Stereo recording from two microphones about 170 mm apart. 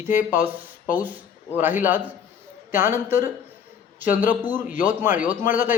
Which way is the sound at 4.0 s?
50° left (ahead or behind).